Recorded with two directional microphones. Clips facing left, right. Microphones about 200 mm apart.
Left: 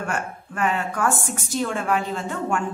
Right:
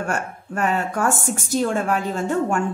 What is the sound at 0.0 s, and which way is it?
A woman's voice, 40° right (ahead or behind).